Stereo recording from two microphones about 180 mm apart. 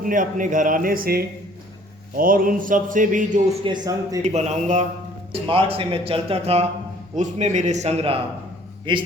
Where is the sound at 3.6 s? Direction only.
25° right (ahead or behind).